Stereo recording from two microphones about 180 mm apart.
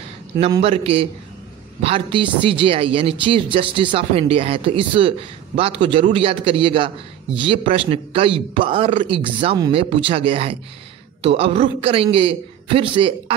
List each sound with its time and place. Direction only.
0.6 s a woman's voice: 30° right (ahead or behind)